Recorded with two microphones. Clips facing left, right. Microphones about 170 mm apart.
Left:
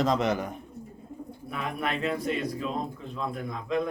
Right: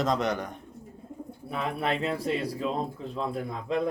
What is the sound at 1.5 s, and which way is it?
A man's voice, 30° right (ahead or behind).